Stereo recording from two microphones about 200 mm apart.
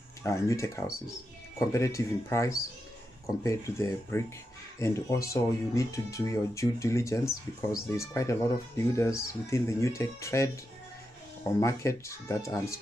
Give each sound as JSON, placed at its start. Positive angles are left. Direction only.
{"t": 0.2, "sound": "speech", "side_deg": 15}
{"t": 11.6, "sound": "speech", "side_deg": 15}